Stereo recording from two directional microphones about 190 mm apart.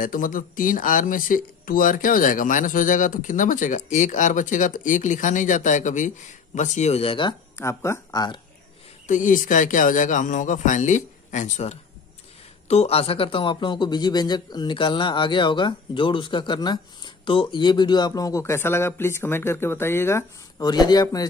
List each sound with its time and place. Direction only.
0.0 s speech: 45° left (ahead or behind); by 7.3 s 25° left (ahead or behind)
7.5 s speech: 15° left (ahead or behind)
9.0 s a man's voice: 40° left (ahead or behind); by 21.3 s 20° left (ahead or behind)